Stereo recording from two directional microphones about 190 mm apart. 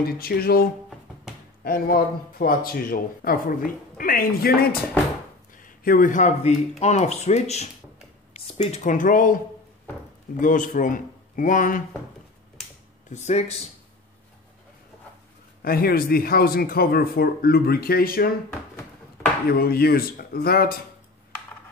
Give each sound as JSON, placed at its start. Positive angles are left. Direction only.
{"t": 0.0, "sound": "speech", "side_deg": 50}
{"t": 5.9, "sound": "speech", "side_deg": 45}
{"t": 10.4, "sound": "speech", "side_deg": 45}
{"t": 13.1, "sound": "speech", "side_deg": 35}
{"t": 15.6, "sound": "speech", "side_deg": 50}
{"t": 19.5, "sound": "speech", "side_deg": 55}